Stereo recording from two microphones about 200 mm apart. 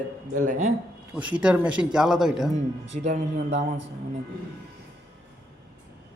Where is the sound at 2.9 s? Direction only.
35° right (ahead or behind).